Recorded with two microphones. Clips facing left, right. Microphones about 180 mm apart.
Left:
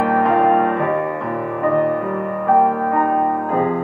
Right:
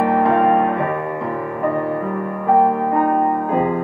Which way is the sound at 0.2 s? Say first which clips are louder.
Left 1 dB; 5° right (ahead or behind).